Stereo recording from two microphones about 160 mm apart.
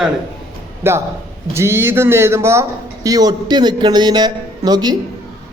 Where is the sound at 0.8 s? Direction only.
15° right (ahead or behind).